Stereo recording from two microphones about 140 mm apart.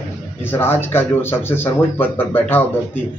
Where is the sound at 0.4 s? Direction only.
15° left (ahead or behind).